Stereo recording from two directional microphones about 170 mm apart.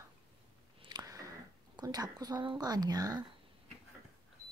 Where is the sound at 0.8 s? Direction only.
25° right (ahead or behind).